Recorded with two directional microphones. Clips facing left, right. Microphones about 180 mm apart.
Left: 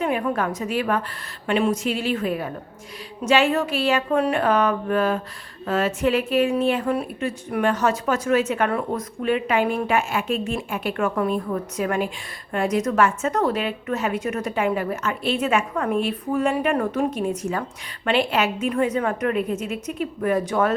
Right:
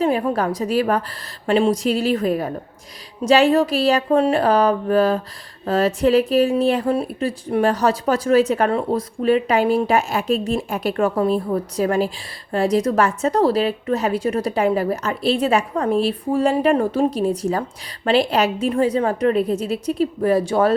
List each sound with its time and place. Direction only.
0.0 s speech: 30° right (ahead or behind)